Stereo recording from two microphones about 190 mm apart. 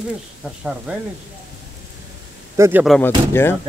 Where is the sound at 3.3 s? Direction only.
10° left (ahead or behind).